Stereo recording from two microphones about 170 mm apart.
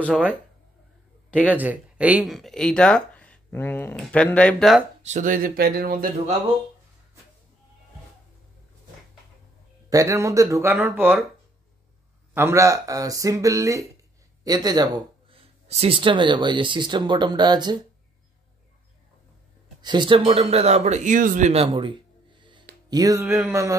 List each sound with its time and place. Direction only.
0.0 s speech: 10° right (ahead or behind)
5.0 s speech: 50° right (ahead or behind)
9.8 s speech: 20° right (ahead or behind)
12.4 s speech: 15° right (ahead or behind)
19.8 s speech: 25° right (ahead or behind); by 21.6 s 45° right (ahead or behind)
22.4 s music: 30° right (ahead or behind)